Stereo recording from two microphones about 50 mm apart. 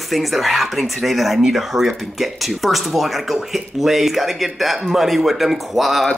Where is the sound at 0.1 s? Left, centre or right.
Centre.